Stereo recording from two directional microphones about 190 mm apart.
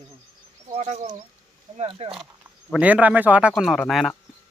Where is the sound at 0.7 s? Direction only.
35° right (ahead or behind).